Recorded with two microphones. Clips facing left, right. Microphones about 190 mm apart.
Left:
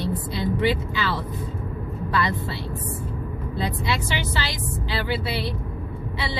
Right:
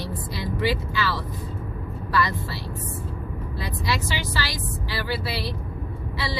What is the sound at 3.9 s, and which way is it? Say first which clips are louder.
A woman's voice: left 1 dB; 20° left (ahead or behind).